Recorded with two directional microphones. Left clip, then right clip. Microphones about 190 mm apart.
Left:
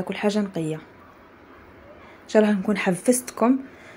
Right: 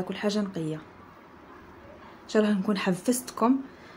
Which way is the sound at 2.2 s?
15° left (ahead or behind).